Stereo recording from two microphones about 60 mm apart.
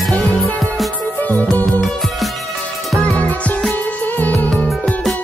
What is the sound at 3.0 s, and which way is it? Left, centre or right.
Music, left.